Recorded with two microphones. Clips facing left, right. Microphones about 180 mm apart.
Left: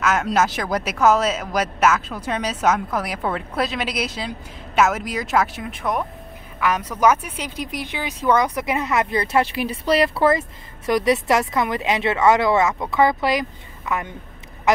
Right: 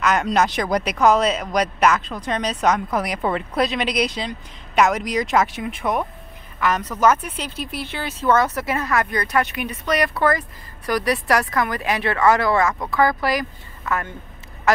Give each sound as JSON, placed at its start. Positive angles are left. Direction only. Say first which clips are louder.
{"t": 0.0, "sound": "speech", "louder": "right 1 dB", "side_deg": 5}
{"t": 6.6, "sound": "speech", "louder": "even", "side_deg": 10}